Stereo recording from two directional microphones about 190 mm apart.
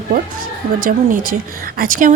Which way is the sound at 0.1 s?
50° right (ahead or behind).